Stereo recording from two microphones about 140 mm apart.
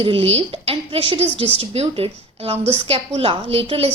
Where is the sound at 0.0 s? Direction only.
45° right (ahead or behind).